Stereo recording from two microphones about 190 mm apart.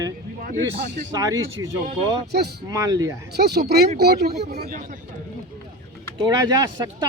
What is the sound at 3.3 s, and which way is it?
A man's voice, 60° right (ahead or behind).